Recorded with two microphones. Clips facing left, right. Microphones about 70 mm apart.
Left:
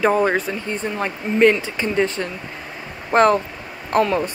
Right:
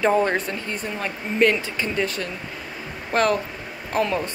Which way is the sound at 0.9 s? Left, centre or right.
Left.